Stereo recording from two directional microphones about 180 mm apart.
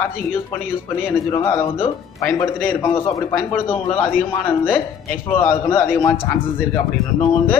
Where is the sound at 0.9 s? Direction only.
15° left (ahead or behind).